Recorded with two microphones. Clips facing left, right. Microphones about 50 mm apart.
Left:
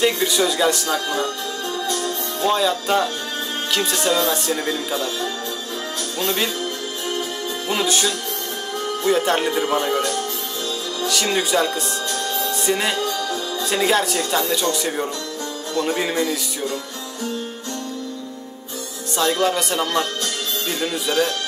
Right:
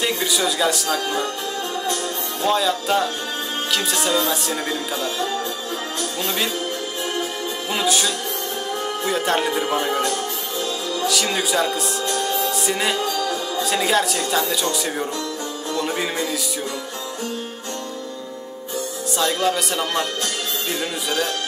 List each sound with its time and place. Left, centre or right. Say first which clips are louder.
0.0 s speech: left 3 dB; centre
2.4 s speech: left 1 dB; centre
6.2 s speech: left 3 dB; centre
7.7 s music: even; centre
9.0 s speech: left 3 dB; centre
11.1 s speech: left 2 dB; centre
12.1 s music: right 5 dB; centre
12.4 s music: even; centre
13.7 s speech: left 1 dB; centre
19.1 s speech: left 2 dB; centre